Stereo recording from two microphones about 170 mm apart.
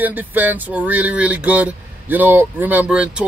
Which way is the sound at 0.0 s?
10° right (ahead or behind).